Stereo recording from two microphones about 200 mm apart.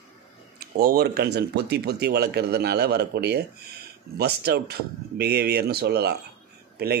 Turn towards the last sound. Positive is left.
turn(degrees=-50)  # may be behind; listen again after turning